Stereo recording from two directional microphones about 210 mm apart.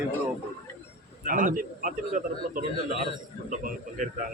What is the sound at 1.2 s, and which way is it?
A man's voice, 40° right (ahead or behind).